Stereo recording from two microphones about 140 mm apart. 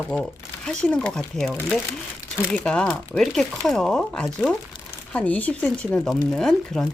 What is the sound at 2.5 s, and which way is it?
Speech, 5° left (ahead or behind).